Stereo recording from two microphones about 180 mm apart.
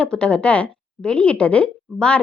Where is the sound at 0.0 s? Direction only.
5° left (ahead or behind).